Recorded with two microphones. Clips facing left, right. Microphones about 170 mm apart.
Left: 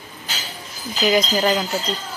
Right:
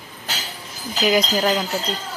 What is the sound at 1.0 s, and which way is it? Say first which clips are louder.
Speech: left 1 dB; 5° right (ahead or behind).